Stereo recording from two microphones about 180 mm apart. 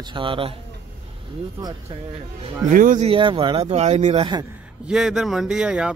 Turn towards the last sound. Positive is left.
turn(degrees=-5)  # may be behind; listen again after turning